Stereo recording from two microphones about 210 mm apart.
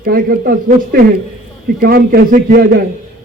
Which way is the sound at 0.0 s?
45° right (ahead or behind).